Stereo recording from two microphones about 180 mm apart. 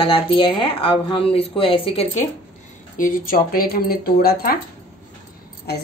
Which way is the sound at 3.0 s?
50° left (ahead or behind).